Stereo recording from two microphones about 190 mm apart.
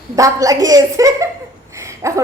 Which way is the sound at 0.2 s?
20° right (ahead or behind).